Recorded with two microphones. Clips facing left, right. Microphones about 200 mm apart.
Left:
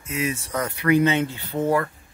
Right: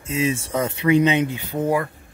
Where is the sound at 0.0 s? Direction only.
30° right (ahead or behind).